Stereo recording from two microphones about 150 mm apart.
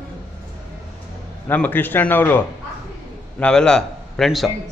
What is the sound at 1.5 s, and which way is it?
A man's voice, 10° left (ahead or behind).